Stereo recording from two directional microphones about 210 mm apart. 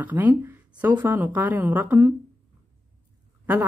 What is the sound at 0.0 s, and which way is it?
Speech, 10° right (ahead or behind).